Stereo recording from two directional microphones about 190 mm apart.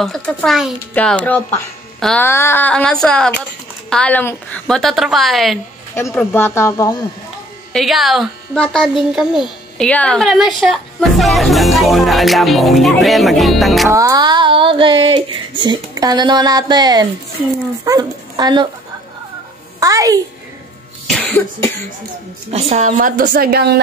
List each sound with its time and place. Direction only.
0.0 s speech: centre (ahead or behind)
2.0 s music: centre (ahead or behind)
2.2 s speech: 15° left (ahead or behind)
5.9 s speech: 10° left (ahead or behind)
7.7 s speech: centre (ahead or behind)
13.8 s speech: 15° right (ahead or behind)
19.8 s a child's voice: 20° right (ahead or behind)
21.1 s speech: 5° left (ahead or behind)
22.5 s a woman's voice: 35° right (ahead or behind); by 23.8 s 60° right (ahead or behind)